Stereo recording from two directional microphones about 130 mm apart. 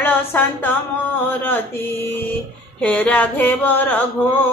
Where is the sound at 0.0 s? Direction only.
15° left (ahead or behind).